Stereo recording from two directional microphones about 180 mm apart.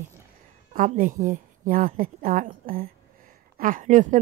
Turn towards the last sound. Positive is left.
turn(degrees=-45)  # may be behind; listen again after turning